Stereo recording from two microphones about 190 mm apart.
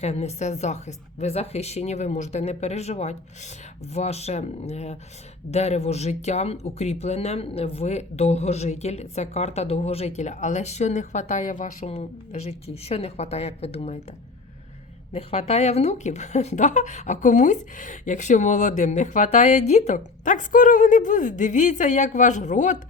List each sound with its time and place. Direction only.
0.0 s speech: 35° left (ahead or behind)
15.1 s speech: 35° left (ahead or behind)